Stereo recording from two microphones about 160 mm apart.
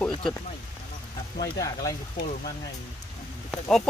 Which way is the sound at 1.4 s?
25° left (ahead or behind).